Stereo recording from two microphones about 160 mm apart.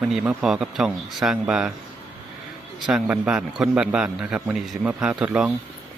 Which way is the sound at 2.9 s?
5° right (ahead or behind).